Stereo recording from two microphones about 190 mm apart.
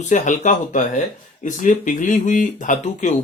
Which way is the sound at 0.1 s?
40° left (ahead or behind).